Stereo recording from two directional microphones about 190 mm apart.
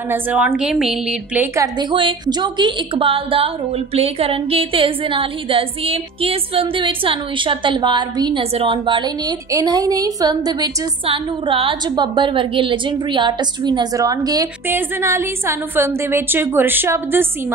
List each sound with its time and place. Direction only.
0.1 s a woman's voice: 10° right (ahead or behind)